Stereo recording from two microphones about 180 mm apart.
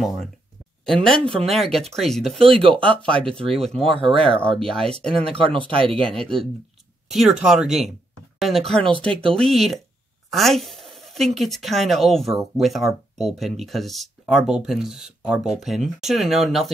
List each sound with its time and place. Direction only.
0.8 s speech: centre (ahead or behind)
3.8 s speech: 30° right (ahead or behind)
4.4 s speech: 5° left (ahead or behind)
5.4 s speech: 30° right (ahead or behind)
5.9 s speech: 5° left (ahead or behind)